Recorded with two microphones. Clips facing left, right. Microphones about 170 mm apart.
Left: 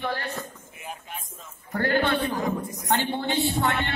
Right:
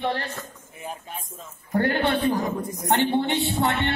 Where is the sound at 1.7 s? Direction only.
20° right (ahead or behind).